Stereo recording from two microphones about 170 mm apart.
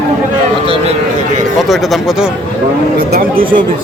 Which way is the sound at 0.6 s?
35° right (ahead or behind).